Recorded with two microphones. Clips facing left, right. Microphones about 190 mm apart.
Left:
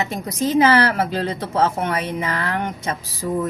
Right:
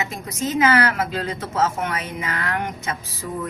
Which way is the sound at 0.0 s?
35° left (ahead or behind).